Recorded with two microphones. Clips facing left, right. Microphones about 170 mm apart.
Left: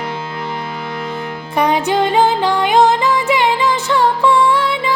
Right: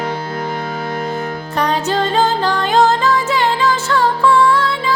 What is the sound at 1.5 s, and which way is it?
Music, 15° left (ahead or behind).